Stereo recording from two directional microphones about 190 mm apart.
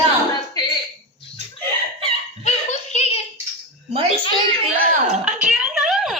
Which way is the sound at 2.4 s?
35° left (ahead or behind).